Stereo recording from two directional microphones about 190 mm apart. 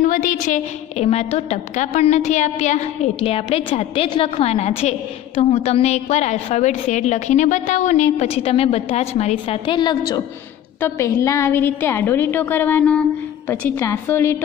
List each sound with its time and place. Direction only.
0.0 s a woman's voice: 40° left (ahead or behind); by 14.4 s 10° left (ahead or behind)